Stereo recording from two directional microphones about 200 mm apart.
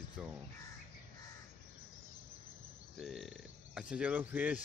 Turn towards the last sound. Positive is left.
turn(degrees=-5)  # may be behind; listen again after turning